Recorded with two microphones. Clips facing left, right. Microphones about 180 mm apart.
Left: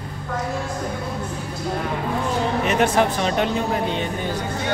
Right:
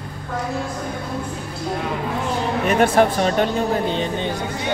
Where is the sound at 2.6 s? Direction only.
55° right (ahead or behind).